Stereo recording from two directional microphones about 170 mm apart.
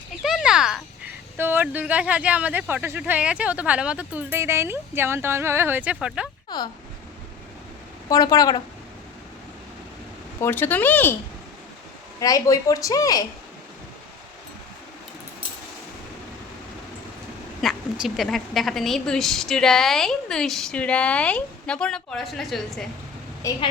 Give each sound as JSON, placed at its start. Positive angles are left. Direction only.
{"t": 0.2, "sound": "speech", "side_deg": 0}
{"t": 6.5, "sound": "speech", "side_deg": 25}
{"t": 8.1, "sound": "a woman's voice", "side_deg": 20}
{"t": 10.4, "sound": "speech", "side_deg": 10}
{"t": 12.2, "sound": "a woman's voice", "side_deg": 20}
{"t": 17.6, "sound": "a woman's voice", "side_deg": 0}
{"t": 23.4, "sound": "speech", "side_deg": 15}